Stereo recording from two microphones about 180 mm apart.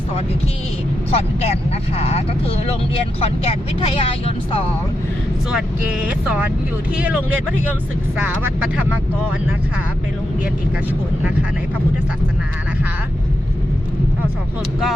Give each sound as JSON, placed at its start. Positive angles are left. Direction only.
{"t": 1.1, "sound": "speech", "side_deg": 35}
{"t": 6.9, "sound": "speech", "side_deg": -5}
{"t": 8.2, "sound": "speech", "side_deg": -5}